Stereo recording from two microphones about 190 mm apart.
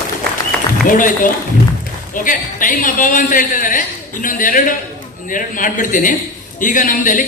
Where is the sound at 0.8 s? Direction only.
45° left (ahead or behind).